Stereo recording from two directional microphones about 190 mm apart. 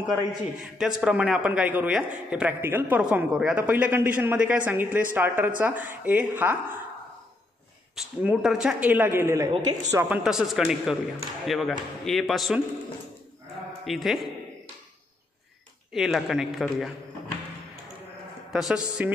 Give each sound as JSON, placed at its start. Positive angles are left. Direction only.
{"t": 0.7, "sound": "a man's voice", "side_deg": -5}
{"t": 7.9, "sound": "a man's voice", "side_deg": -5}
{"t": 9.5, "sound": "speech", "side_deg": -25}
{"t": 9.9, "sound": "speech", "side_deg": -10}
{"t": 13.8, "sound": "speech", "side_deg": 0}
{"t": 15.9, "sound": "speech", "side_deg": 0}
{"t": 18.5, "sound": "speech", "side_deg": -5}